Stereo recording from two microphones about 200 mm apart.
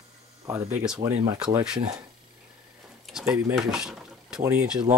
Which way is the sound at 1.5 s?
5° right (ahead or behind).